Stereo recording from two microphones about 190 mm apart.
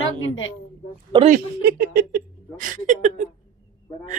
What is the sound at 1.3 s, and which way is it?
Speech, 55° right (ahead or behind).